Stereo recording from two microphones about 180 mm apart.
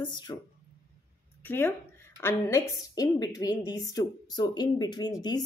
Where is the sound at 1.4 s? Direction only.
10° left (ahead or behind).